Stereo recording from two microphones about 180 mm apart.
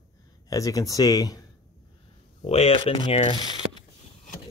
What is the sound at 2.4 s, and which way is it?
Speech, 35° left (ahead or behind).